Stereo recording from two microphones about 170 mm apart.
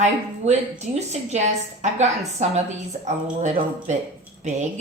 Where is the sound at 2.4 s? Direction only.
45° right (ahead or behind).